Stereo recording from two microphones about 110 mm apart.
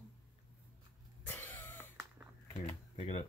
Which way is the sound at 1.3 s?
15° left (ahead or behind).